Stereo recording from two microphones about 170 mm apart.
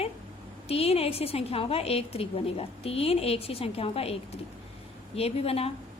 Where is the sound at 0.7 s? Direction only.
35° left (ahead or behind).